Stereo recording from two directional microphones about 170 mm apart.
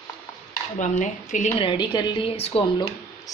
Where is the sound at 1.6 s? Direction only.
30° left (ahead or behind).